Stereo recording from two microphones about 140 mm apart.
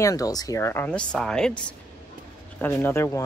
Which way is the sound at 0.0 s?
25° left (ahead or behind).